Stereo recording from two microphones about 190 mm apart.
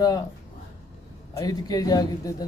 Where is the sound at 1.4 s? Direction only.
20° left (ahead or behind).